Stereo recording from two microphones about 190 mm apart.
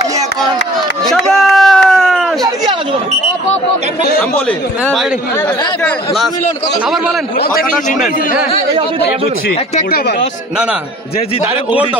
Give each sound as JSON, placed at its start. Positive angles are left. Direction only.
{"t": 1.0, "sound": "a sound", "side_deg": 0}
{"t": 4.2, "sound": "a man's voice", "side_deg": 5}
{"t": 7.3, "sound": "a man's voice", "side_deg": 50}
{"t": 9.8, "sound": "a man's voice", "side_deg": 55}